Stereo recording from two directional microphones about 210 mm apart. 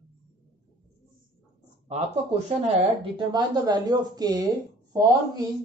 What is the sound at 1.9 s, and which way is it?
Speech, 30° right (ahead or behind).